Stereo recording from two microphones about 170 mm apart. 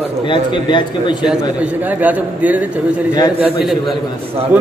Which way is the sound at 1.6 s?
10° right (ahead or behind).